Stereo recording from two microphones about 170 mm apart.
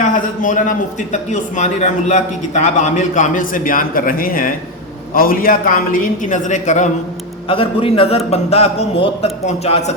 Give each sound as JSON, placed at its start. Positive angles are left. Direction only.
{"t": 0.0, "sound": "a man's voice", "side_deg": 50}
{"t": 7.4, "sound": "a man's voice", "side_deg": 30}